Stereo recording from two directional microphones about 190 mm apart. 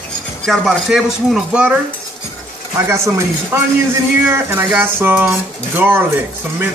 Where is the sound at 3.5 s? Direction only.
15° right (ahead or behind).